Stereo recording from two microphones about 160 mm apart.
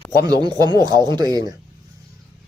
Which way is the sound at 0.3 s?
25° right (ahead or behind).